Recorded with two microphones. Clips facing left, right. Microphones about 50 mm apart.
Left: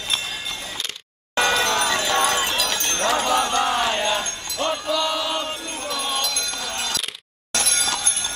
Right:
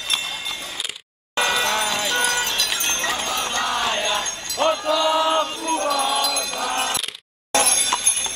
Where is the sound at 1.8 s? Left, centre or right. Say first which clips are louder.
Left 2 dB; left.